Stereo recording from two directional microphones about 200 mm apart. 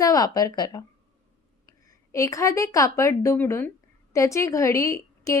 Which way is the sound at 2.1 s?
15° left (ahead or behind).